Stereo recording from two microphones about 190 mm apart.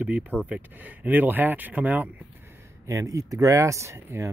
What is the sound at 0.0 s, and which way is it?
Speech, 10° right (ahead or behind).